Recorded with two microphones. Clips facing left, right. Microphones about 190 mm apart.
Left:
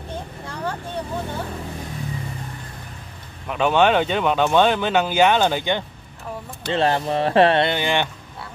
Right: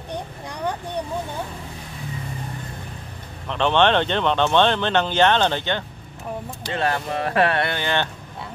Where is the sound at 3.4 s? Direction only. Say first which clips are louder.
Left 1 dB; 10° left (ahead or behind).